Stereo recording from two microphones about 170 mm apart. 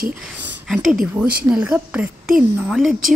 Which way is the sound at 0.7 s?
Centre (ahead or behind).